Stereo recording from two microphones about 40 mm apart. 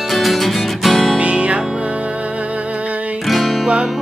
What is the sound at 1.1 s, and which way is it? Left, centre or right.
Music, right.